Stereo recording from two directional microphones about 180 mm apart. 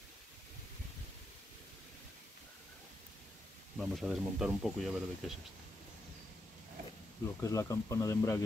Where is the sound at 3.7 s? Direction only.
Centre (ahead or behind).